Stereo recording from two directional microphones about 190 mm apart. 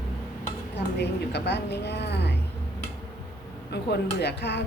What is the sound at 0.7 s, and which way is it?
A woman's voice, 60° left (ahead or behind).